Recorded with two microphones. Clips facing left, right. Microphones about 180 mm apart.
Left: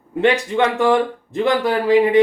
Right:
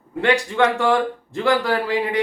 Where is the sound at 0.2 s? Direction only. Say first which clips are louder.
Left 2 dB; 20° left (ahead or behind).